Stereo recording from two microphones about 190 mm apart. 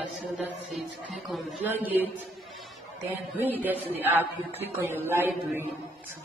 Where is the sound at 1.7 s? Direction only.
10° right (ahead or behind).